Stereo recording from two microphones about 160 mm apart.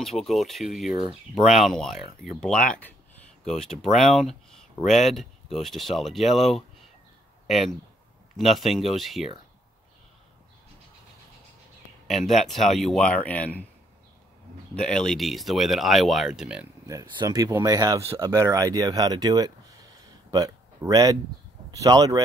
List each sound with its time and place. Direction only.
0.0 s speech: centre (ahead or behind)
12.1 s speech: centre (ahead or behind)
14.8 s speech: 5° left (ahead or behind)
16.8 s speech: 20° right (ahead or behind)